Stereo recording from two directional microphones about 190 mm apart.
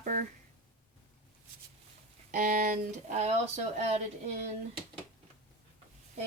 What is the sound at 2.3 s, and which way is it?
Speech, 45° right (ahead or behind).